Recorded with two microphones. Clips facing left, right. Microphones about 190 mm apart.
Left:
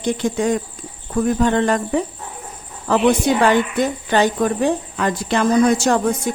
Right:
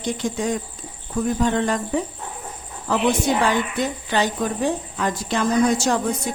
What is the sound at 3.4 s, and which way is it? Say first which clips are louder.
Speech: left 5 dB; 50° left (ahead or behind).